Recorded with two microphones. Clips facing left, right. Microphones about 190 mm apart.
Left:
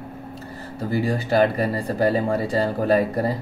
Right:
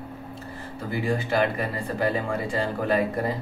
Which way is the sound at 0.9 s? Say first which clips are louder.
Left 4 dB; 35° left (ahead or behind).